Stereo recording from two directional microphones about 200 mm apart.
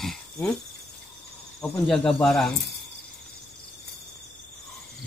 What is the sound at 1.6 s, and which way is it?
Speech, 5° left (ahead or behind).